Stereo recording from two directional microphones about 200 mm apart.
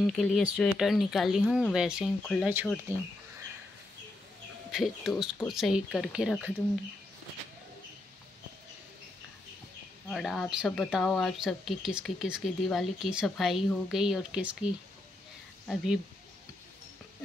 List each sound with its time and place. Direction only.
0.0 s speech: centre (ahead or behind)
4.6 s speech: centre (ahead or behind)
10.0 s speech: centre (ahead or behind)